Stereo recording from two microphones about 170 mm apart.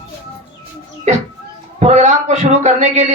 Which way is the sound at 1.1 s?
40° right (ahead or behind).